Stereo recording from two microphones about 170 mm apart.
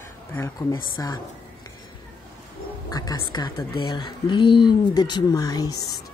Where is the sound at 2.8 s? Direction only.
20° left (ahead or behind).